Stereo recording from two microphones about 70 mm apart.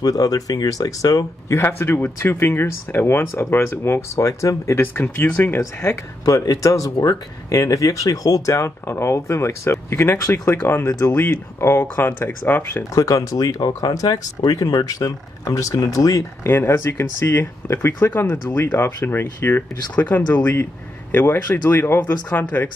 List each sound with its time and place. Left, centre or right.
0.0 s speech: left
1.5 s speech: left
6.2 s speech: left
12.9 s speech: left
16.4 s speech: left